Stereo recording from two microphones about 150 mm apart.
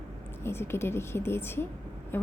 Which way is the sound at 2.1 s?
15° left (ahead or behind).